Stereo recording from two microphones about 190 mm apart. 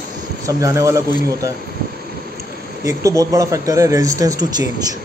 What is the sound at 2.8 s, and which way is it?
Speech, 15° right (ahead or behind).